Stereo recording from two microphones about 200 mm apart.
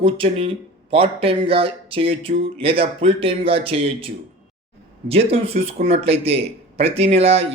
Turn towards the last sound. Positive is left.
turn(degrees=-30)  # may be behind; listen again after turning